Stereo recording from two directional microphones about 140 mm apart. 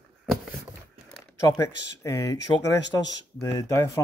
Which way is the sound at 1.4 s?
20° left (ahead or behind).